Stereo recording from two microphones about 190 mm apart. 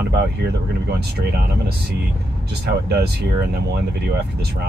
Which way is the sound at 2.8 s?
55° right (ahead or behind).